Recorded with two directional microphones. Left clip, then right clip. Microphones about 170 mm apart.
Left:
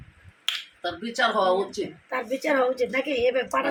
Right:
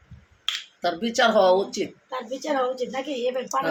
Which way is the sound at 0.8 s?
65° right (ahead or behind).